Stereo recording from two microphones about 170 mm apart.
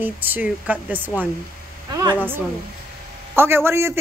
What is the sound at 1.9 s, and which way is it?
Speech, 20° right (ahead or behind).